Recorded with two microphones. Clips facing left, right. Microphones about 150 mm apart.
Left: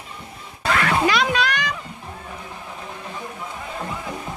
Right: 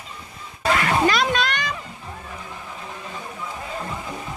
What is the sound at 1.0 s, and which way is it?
Music, 10° left (ahead or behind).